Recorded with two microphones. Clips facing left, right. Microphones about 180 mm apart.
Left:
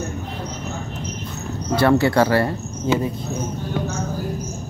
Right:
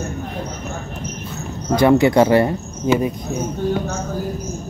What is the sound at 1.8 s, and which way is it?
Speech, 15° right (ahead or behind).